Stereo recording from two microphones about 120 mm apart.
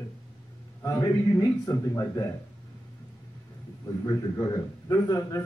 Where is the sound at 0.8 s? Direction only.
30° left (ahead or behind).